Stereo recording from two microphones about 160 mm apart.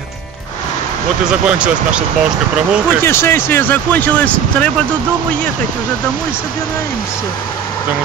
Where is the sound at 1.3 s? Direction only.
5° right (ahead or behind).